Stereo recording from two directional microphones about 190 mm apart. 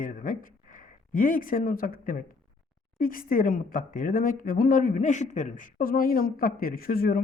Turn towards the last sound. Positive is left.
turn(degrees=50)  # may be behind; listen again after turning